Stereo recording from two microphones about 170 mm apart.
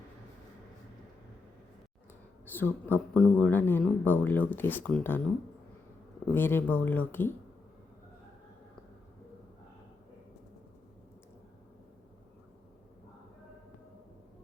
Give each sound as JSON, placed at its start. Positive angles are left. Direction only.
{"t": 2.5, "sound": "speech", "side_deg": 10}
{"t": 6.3, "sound": "speech", "side_deg": 10}